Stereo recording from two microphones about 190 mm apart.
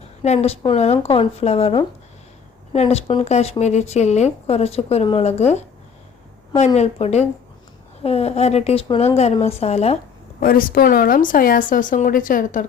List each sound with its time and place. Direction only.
0.2 s speech: 35° left (ahead or behind)
6.7 s speech: 35° left (ahead or behind)
10.4 s speech: 50° left (ahead or behind)